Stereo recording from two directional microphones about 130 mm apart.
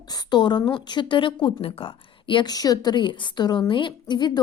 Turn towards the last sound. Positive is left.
turn(degrees=35)  # may be behind; listen again after turning